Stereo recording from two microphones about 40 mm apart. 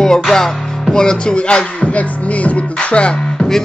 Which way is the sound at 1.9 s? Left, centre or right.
Left.